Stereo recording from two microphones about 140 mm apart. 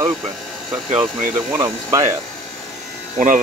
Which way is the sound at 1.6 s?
20° right (ahead or behind).